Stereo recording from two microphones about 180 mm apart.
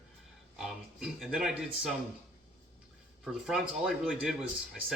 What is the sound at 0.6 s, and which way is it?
Speech, 5° right (ahead or behind).